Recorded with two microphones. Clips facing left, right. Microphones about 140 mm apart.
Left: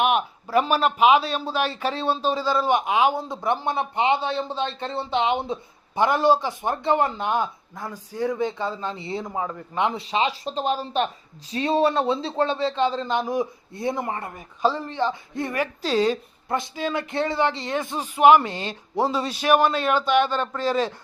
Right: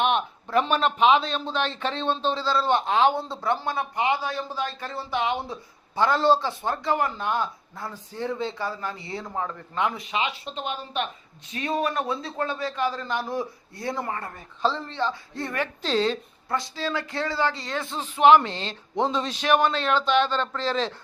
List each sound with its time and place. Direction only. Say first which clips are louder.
0.0 s a man's voice: left 2 dB; 5° left (ahead or behind)